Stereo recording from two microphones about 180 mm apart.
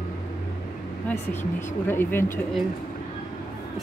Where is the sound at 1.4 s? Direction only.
40° left (ahead or behind).